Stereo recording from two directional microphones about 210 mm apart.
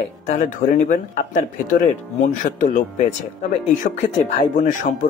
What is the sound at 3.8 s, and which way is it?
Speech, 40° left (ahead or behind).